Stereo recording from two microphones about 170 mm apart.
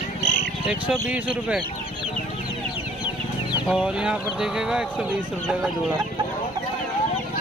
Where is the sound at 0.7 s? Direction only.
5° right (ahead or behind).